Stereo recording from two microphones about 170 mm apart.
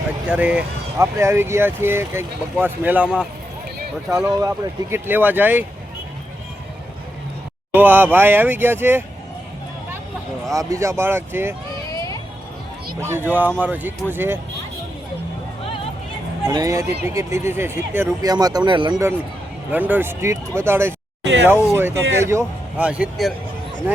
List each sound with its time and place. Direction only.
0.3 s speech: 5° right (ahead or behind)
4.4 s speech: 15° right (ahead or behind)
7.7 s speech: 10° right (ahead or behind)
10.5 s speech: 20° right (ahead or behind)
11.9 s a sound: 20° left (ahead or behind)
13.0 s speech: 15° right (ahead or behind)
16.5 s speech: 20° right (ahead or behind)
19.7 s speech: 10° right (ahead or behind)
22.9 s speech: 5° right (ahead or behind)